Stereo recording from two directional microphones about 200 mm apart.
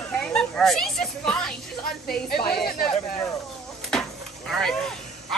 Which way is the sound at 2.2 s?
50° left (ahead or behind).